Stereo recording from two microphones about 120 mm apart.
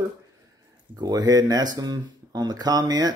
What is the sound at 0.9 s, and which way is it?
Speech, 30° right (ahead or behind).